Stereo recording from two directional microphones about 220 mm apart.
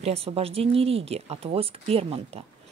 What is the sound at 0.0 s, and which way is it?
Speech, 25° right (ahead or behind).